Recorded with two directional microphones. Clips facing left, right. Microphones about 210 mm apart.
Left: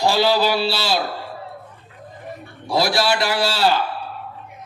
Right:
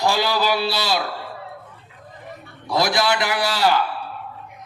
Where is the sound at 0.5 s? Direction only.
15° right (ahead or behind).